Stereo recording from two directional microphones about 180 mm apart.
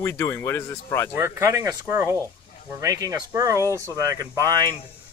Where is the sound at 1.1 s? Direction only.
15° right (ahead or behind).